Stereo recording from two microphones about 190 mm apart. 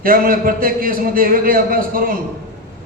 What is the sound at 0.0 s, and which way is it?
A man's voice, 50° right (ahead or behind).